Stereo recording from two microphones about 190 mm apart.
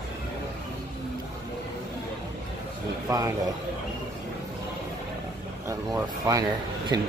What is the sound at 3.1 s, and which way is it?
Speech, 20° right (ahead or behind).